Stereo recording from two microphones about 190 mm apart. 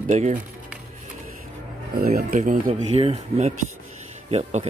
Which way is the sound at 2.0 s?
50° right (ahead or behind).